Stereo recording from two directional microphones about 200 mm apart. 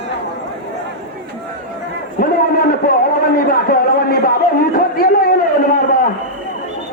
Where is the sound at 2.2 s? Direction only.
45° left (ahead or behind).